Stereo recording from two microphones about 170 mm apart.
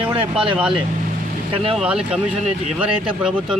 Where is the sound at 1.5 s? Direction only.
35° right (ahead or behind).